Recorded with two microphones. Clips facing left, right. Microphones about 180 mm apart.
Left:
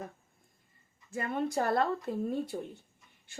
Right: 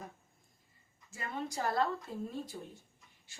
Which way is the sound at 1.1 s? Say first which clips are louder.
Left 8 dB; 55° left (ahead or behind).